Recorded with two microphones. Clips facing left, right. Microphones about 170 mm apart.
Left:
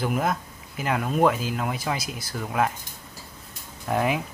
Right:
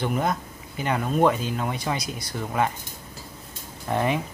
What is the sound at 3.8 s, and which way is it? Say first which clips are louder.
Speech: even; 5° left (ahead or behind).